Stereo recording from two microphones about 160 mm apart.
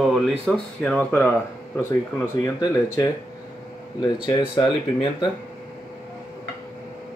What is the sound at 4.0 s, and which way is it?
Speech, 30° left (ahead or behind).